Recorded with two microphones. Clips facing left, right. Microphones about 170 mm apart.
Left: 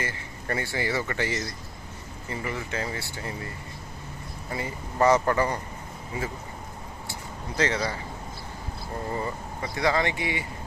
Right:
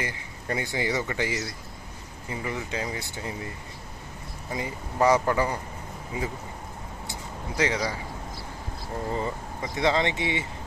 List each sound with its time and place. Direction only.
0.0 s speech: 15° right (ahead or behind)
4.5 s speech: 15° right (ahead or behind)
7.1 s a sound: 10° right (ahead or behind)
9.1 s speech: 20° right (ahead or behind)